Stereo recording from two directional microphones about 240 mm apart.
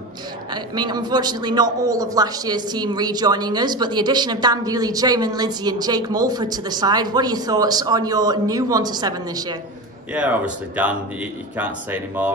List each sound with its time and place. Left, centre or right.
0.5 s a man's voice: centre
10.1 s a man's voice: centre